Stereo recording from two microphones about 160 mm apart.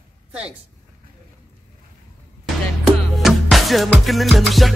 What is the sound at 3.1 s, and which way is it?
Music, centre (ahead or behind).